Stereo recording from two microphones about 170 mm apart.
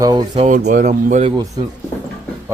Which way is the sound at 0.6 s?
55° right (ahead or behind).